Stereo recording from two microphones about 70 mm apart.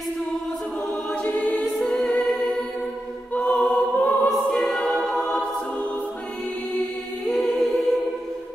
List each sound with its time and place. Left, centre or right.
1.2 s choir: left
1.6 s music: centre
3.3 s choir: centre
4.3 s choir: centre
7.2 s music: centre